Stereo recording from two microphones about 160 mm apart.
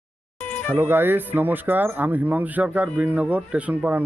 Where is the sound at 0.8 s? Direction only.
15° right (ahead or behind).